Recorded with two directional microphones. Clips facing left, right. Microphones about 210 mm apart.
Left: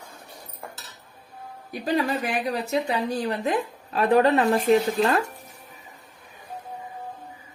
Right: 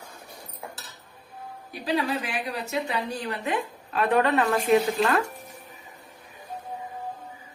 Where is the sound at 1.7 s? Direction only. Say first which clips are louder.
Left 2 dB; 45° left (ahead or behind).